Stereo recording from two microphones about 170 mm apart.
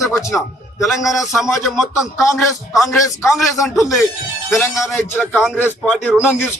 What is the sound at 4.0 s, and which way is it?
Speech, 20° left (ahead or behind).